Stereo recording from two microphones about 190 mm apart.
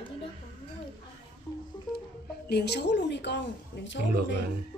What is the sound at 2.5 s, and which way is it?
A woman's voice, 60° left (ahead or behind).